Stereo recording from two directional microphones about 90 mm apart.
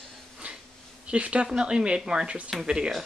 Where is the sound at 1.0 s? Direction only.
15° right (ahead or behind).